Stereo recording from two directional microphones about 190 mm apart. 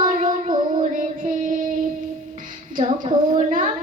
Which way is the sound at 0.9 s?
45° right (ahead or behind).